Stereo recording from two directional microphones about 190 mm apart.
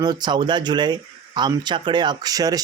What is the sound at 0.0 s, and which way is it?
Speech, 20° right (ahead or behind).